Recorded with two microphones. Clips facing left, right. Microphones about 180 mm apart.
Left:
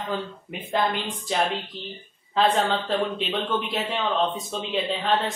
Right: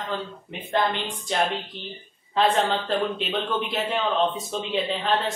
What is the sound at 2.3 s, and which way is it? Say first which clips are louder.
Speech: even; centre (ahead or behind).